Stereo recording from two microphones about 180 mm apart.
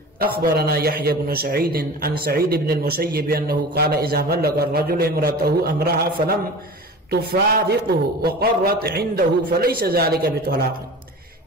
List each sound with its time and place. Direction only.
0.2 s a man's voice: 55° right (ahead or behind)
7.1 s a man's voice: 60° right (ahead or behind)